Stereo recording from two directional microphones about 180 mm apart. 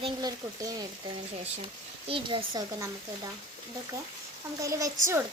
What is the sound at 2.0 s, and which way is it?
Speech, 30° right (ahead or behind).